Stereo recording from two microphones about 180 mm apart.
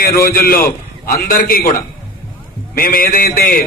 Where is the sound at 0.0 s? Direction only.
55° left (ahead or behind).